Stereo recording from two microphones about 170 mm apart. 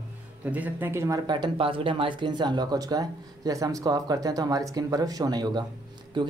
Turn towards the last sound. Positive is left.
turn(degrees=-25)  # may be behind; listen again after turning